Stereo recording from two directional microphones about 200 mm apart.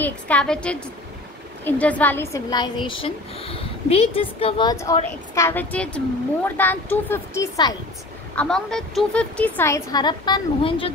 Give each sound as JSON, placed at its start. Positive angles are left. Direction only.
{"t": 0.0, "sound": "a woman's voice", "side_deg": 5}
{"t": 8.4, "sound": "speech", "side_deg": 5}